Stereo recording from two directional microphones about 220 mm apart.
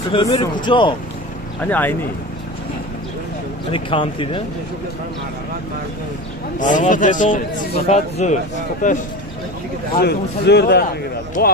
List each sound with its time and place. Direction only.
0.1 s speech: 20° left (ahead or behind)
1.6 s speech: 10° left (ahead or behind)
3.7 s speech: 25° left (ahead or behind)
6.6 s speech: 35° left (ahead or behind)
9.9 s a man's voice: 50° left (ahead or behind)